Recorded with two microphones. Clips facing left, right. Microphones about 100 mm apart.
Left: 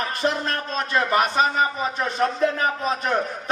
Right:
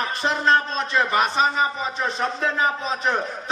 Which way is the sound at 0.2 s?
50° left (ahead or behind).